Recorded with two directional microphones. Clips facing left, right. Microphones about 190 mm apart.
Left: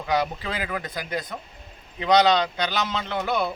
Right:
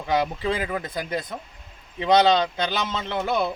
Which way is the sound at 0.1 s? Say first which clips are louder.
Right 2 dB; 25° right (ahead or behind).